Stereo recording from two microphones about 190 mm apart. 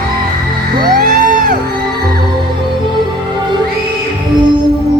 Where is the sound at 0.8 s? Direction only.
45° right (ahead or behind).